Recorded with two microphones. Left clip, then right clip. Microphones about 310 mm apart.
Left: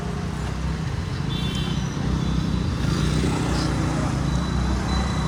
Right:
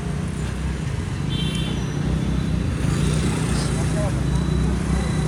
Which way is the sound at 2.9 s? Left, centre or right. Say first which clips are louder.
Left 1 dB; left.